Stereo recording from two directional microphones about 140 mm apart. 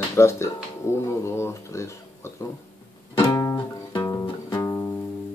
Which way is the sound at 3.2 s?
25° left (ahead or behind).